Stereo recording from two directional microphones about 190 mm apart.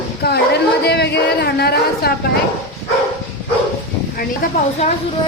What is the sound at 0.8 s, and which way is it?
Speech, 60° left (ahead or behind).